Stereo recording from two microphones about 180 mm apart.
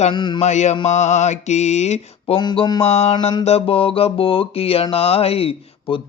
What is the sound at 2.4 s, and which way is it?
Mantra, 25° left (ahead or behind).